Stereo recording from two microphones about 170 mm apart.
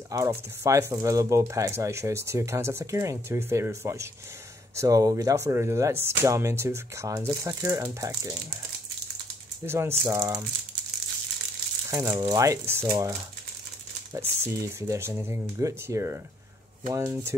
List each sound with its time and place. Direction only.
0.1 s speech: 15° right (ahead or behind)
9.7 s speech: 15° right (ahead or behind)
12.1 s speech: 25° right (ahead or behind)
14.1 s speech: 15° right (ahead or behind)